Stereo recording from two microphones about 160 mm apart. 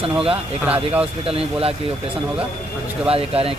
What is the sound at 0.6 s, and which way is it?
Speech, 10° right (ahead or behind).